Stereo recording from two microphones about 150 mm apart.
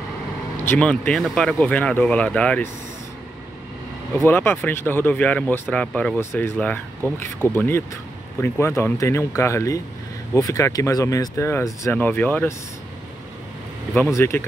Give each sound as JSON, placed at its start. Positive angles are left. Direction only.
{"t": 0.7, "sound": "speech", "side_deg": 10}
{"t": 4.2, "sound": "speech", "side_deg": 15}
{"t": 14.1, "sound": "speech", "side_deg": 15}